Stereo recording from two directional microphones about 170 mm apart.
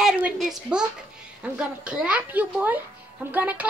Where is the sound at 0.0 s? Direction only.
Centre (ahead or behind).